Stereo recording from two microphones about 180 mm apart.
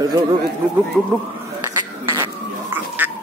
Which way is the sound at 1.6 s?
20° right (ahead or behind).